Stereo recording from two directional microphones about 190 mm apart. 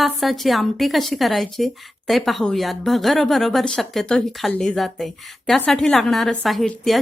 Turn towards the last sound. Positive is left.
turn(degrees=0)  # may be behind; listen again after turning